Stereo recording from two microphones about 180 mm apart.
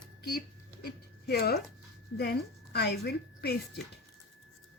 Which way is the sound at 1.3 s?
65° left (ahead or behind).